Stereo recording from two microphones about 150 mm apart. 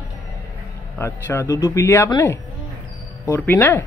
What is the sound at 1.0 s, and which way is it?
Speech, 15° left (ahead or behind).